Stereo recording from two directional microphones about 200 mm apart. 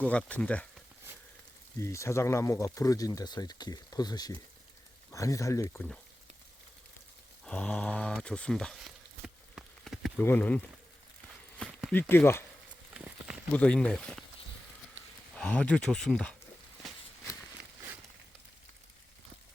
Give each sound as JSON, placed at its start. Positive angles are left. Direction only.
{"t": 0.0, "sound": "speech", "side_deg": 5}
{"t": 1.8, "sound": "speech", "side_deg": 15}
{"t": 7.4, "sound": "mantra", "side_deg": 5}
{"t": 10.2, "sound": "speech", "side_deg": 10}
{"t": 11.6, "sound": "speech", "side_deg": 5}
{"t": 12.9, "sound": "a sound", "side_deg": -5}
{"t": 13.5, "sound": "speech", "side_deg": 5}
{"t": 15.4, "sound": "speech", "side_deg": 5}